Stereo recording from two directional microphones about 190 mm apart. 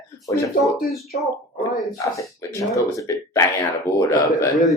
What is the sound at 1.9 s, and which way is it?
Speech, 15° left (ahead or behind).